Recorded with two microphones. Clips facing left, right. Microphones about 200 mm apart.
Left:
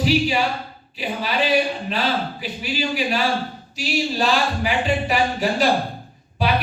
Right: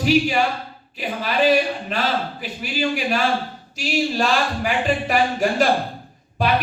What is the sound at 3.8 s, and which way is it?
Speech, 50° right (ahead or behind).